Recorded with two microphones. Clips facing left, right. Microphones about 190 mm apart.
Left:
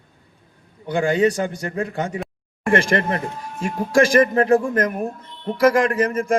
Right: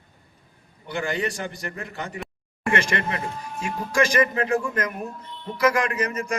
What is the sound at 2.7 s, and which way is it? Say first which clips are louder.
A man's voice: left 6 dB; 50° left (ahead or behind).